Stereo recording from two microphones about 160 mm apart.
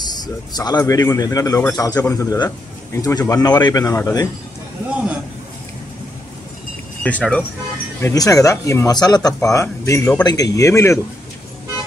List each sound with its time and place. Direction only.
0.0 s speech: 25° left (ahead or behind)
7.0 s speech: 10° left (ahead or behind)
8.0 s speech: 20° left (ahead or behind)